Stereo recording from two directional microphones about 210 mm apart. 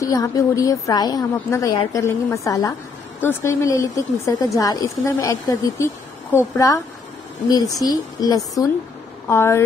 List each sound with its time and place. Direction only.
0.0 s a woman's voice: 15° left (ahead or behind)